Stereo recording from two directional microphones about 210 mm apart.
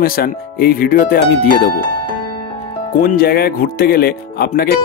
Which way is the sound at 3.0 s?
45° left (ahead or behind).